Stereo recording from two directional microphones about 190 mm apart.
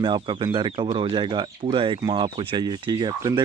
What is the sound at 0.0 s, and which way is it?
Speech, 25° right (ahead or behind).